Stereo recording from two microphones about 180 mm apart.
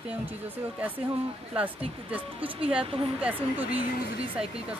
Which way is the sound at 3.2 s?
10° right (ahead or behind).